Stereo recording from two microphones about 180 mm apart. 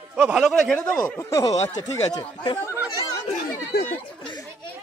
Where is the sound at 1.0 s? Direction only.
15° left (ahead or behind).